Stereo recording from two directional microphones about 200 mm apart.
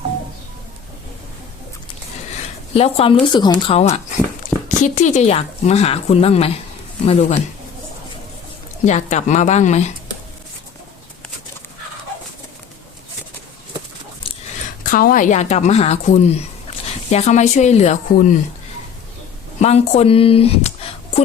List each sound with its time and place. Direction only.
2.7 s a woman's voice: 30° left (ahead or behind)
8.8 s a woman's voice: 35° left (ahead or behind)
14.8 s a woman's voice: 45° left (ahead or behind)
19.5 s speech: 35° left (ahead or behind)